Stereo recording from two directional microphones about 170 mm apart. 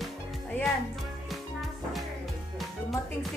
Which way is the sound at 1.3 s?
Centre (ahead or behind).